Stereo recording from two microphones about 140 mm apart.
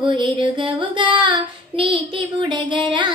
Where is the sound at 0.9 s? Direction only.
35° right (ahead or behind).